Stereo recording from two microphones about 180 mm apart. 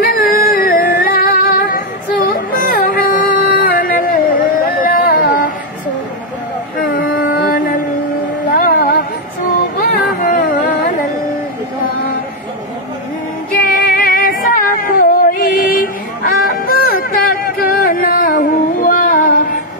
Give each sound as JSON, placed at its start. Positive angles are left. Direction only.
{"t": 0.0, "sound": "a sound", "side_deg": 50}
{"t": 2.2, "sound": "music", "side_deg": 55}
{"t": 6.9, "sound": "music", "side_deg": 55}
{"t": 13.6, "sound": "female singing", "side_deg": 55}
{"t": 16.6, "sound": "a sound", "side_deg": 55}
{"t": 17.8, "sound": "music", "side_deg": 55}